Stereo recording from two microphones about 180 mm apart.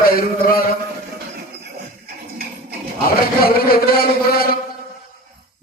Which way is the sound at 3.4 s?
55° left (ahead or behind).